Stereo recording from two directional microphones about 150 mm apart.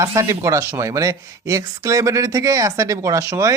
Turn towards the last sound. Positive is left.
turn(degrees=-20)  # may be behind; listen again after turning